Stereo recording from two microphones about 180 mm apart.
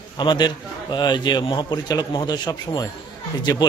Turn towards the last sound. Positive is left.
turn(degrees=20)  # may be behind; listen again after turning